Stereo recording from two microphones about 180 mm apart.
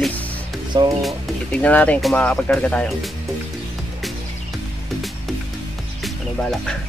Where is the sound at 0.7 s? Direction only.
20° right (ahead or behind).